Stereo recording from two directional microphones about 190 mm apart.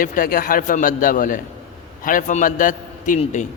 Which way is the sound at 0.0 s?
45° left (ahead or behind).